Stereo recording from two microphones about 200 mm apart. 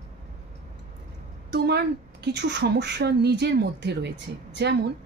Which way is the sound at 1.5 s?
55° right (ahead or behind).